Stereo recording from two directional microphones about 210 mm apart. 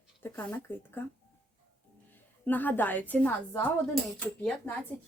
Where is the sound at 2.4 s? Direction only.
10° left (ahead or behind).